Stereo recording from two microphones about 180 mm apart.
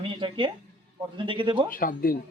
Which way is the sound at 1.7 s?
50° left (ahead or behind).